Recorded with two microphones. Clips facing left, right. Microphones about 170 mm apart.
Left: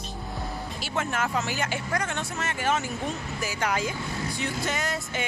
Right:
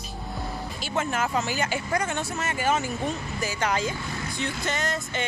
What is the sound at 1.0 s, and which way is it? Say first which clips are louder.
Speech: right 2 dB; centre (ahead or behind).